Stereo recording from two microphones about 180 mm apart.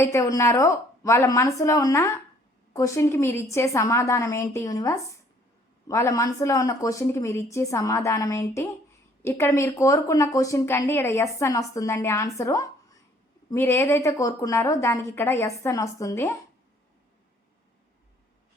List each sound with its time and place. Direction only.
0.0 s speech: 15° left (ahead or behind)